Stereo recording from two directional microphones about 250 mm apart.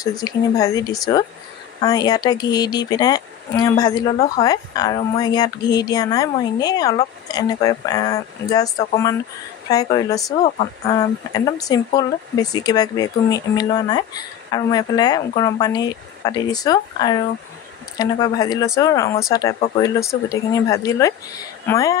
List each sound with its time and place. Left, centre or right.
0.2 s speech: centre